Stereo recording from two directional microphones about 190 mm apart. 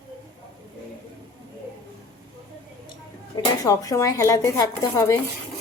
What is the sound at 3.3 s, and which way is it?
Speech, 20° left (ahead or behind).